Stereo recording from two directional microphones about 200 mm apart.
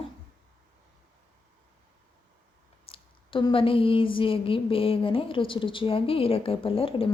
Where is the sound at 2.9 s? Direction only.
25° left (ahead or behind).